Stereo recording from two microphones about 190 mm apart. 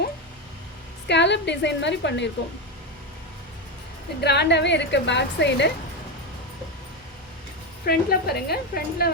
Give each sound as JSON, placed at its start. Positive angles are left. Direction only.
{"t": 1.0, "sound": "a woman's voice", "side_deg": 65}
{"t": 4.2, "sound": "a woman's voice", "side_deg": 60}
{"t": 7.9, "sound": "a woman's voice", "side_deg": 55}